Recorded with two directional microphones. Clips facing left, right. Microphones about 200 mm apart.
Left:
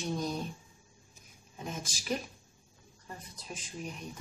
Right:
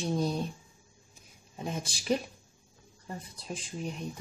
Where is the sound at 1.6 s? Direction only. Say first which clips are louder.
Right 4 dB; 30° right (ahead or behind).